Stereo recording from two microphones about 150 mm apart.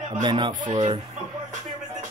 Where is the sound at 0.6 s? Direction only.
55° right (ahead or behind).